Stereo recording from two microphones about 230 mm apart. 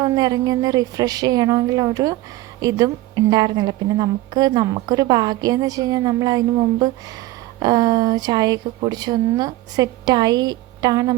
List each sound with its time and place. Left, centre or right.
0.0 s a woman's voice: centre